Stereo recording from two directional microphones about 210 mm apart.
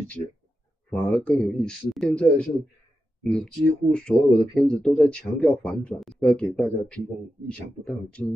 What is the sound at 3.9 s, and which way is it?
Speech, 5° left (ahead or behind).